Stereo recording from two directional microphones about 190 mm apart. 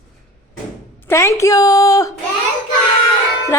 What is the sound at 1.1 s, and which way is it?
Speech, 15° left (ahead or behind).